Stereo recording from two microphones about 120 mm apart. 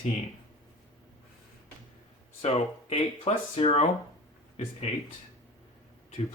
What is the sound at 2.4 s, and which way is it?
Speech, 60° left (ahead or behind).